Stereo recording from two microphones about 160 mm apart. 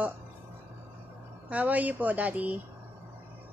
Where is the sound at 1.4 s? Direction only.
10° right (ahead or behind).